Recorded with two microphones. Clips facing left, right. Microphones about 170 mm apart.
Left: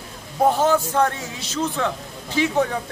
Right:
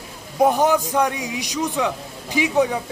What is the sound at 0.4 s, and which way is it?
Speech, 15° right (ahead or behind).